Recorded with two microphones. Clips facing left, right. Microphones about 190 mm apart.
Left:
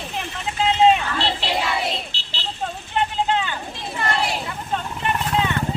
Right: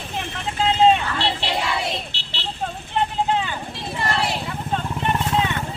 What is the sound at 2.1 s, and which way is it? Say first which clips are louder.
Vehicle: right 1 dB; 65° right (ahead or behind).